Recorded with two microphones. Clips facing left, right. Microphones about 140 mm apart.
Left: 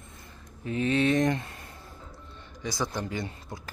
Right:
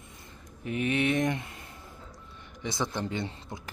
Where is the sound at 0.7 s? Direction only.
20° right (ahead or behind).